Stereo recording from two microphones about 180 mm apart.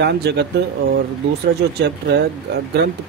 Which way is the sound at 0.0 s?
65° right (ahead or behind).